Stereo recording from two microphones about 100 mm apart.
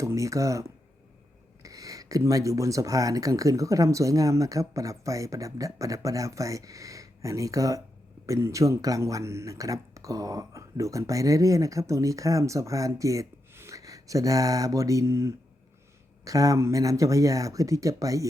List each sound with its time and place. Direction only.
0.0 s speech: 30° right (ahead or behind)